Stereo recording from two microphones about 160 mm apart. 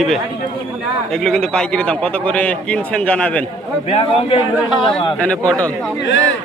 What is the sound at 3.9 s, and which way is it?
Speech, 35° left (ahead or behind).